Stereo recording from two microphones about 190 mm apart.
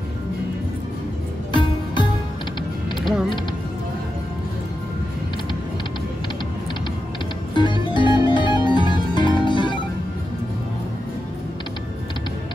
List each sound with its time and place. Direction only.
1.5 s music: 25° left (ahead or behind)
7.5 s music: 25° left (ahead or behind)